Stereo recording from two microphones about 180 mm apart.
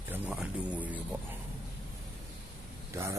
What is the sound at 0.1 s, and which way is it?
Speech, 5° right (ahead or behind).